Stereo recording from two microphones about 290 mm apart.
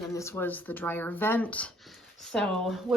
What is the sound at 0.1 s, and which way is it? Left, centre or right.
A woman's voice, centre.